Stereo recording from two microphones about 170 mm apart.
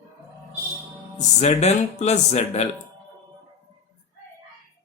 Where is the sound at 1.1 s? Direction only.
40° left (ahead or behind).